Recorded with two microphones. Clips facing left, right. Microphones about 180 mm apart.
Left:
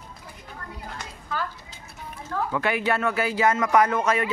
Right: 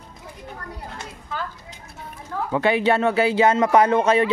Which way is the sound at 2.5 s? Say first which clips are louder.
Right 7 dB; 25° right (ahead or behind).